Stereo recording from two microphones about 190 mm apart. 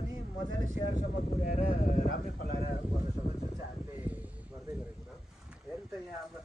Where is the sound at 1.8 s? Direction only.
45° left (ahead or behind).